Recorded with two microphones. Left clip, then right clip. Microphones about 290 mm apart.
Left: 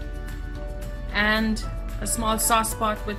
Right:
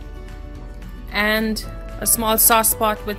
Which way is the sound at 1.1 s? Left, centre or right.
Right.